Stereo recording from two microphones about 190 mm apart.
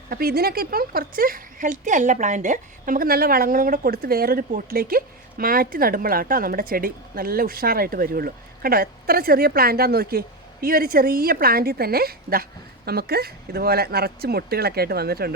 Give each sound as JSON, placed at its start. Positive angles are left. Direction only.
{"t": 0.1, "sound": "speech", "side_deg": -55}